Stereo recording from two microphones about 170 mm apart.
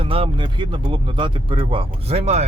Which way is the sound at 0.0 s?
30° right (ahead or behind).